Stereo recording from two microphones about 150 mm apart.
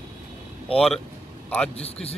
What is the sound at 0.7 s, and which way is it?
Speech, 5° left (ahead or behind).